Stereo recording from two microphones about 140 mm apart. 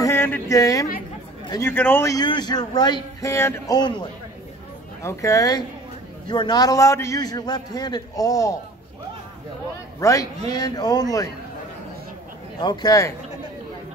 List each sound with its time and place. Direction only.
0.0 s a sound: 15° left (ahead or behind)
1.6 s a man's voice: 15° left (ahead or behind)
2.1 s a man's voice: 30° left (ahead or behind)
9.9 s a man's voice: 25° left (ahead or behind)
12.5 s a man's voice: 30° left (ahead or behind)